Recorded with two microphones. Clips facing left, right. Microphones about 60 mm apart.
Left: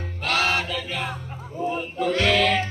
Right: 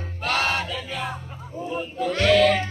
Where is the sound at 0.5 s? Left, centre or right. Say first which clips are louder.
Left 2 dB; left.